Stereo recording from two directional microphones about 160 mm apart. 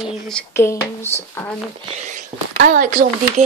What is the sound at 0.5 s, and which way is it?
Speech, 15° left (ahead or behind).